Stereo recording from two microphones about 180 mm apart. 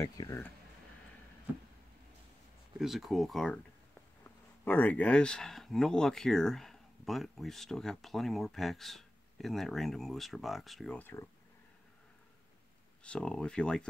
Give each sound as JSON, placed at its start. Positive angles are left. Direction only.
{"t": 0.0, "sound": "speech", "side_deg": 15}
{"t": 2.8, "sound": "speech", "side_deg": 0}
{"t": 13.0, "sound": "speech", "side_deg": 5}